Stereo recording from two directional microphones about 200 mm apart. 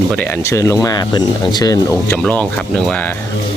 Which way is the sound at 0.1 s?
10° left (ahead or behind).